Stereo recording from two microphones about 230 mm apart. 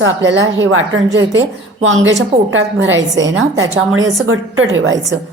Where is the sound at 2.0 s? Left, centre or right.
Right.